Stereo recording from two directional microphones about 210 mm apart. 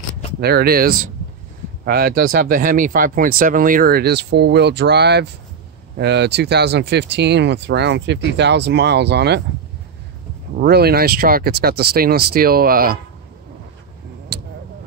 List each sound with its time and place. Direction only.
0.4 s speech: 50° right (ahead or behind)
10.5 s speech: 50° right (ahead or behind)
14.3 s vehicle: 50° right (ahead or behind)